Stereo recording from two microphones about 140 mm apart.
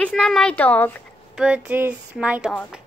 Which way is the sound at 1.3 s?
10° right (ahead or behind).